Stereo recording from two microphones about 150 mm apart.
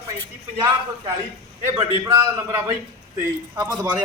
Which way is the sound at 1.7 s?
25° right (ahead or behind).